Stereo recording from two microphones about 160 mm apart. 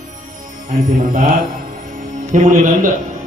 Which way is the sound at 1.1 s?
65° right (ahead or behind).